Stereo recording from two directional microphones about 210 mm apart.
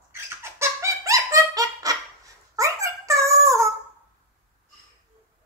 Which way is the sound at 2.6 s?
15° right (ahead or behind).